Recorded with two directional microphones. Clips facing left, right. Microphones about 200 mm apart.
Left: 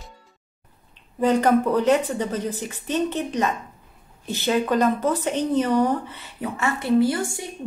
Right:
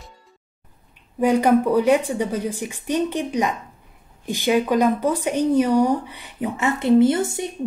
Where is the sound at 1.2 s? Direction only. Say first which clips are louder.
Right 2 dB; 10° right (ahead or behind).